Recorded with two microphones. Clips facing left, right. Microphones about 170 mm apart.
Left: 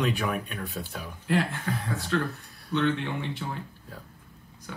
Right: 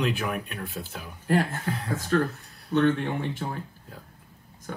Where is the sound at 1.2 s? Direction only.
45° right (ahead or behind).